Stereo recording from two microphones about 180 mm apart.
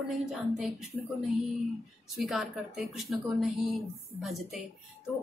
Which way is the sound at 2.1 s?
Centre (ahead or behind).